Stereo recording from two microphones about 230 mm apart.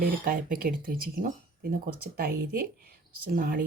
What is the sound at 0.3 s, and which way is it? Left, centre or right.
Speech, right.